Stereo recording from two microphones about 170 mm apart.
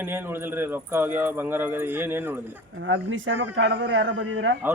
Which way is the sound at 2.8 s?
90° right.